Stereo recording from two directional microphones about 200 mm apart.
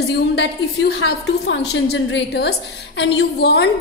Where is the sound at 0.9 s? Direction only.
60° left (ahead or behind).